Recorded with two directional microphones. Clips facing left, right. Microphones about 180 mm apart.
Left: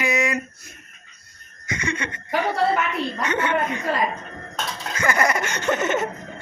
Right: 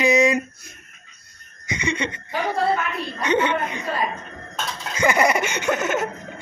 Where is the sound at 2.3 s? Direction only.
85° left.